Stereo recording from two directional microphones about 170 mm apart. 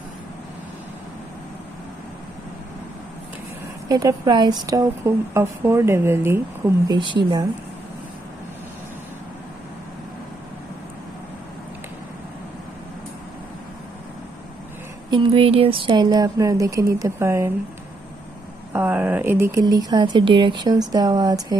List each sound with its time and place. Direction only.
3.9 s a woman's voice: 20° right (ahead or behind)
15.0 s speech: 30° right (ahead or behind)
18.7 s speech: 10° right (ahead or behind)